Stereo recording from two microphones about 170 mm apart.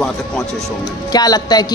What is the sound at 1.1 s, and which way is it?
Speech, 20° left (ahead or behind).